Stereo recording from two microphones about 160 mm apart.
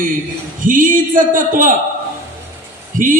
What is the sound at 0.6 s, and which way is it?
Speech, 55° right (ahead or behind).